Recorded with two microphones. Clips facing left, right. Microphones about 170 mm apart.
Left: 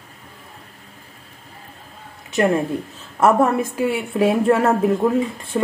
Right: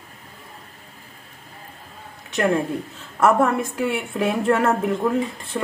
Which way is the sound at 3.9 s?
10° left (ahead or behind).